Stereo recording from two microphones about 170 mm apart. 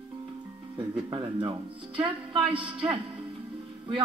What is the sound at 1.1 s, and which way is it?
A man's voice, 30° right (ahead or behind).